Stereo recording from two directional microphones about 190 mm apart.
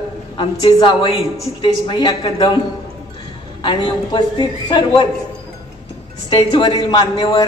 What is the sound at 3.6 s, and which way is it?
A woman's voice, 25° left (ahead or behind).